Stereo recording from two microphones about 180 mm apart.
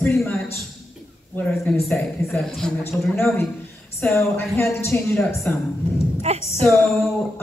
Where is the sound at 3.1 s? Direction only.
15° left (ahead or behind).